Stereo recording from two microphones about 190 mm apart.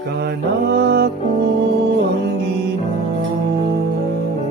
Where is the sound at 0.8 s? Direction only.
55° right (ahead or behind).